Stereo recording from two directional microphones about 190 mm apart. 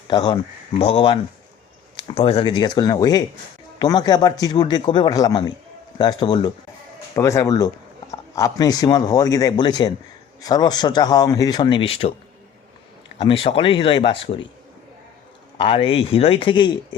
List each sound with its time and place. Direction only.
0.1 s speech: 20° left (ahead or behind)
13.1 s speech: 30° left (ahead or behind)
15.5 s speech: 25° left (ahead or behind)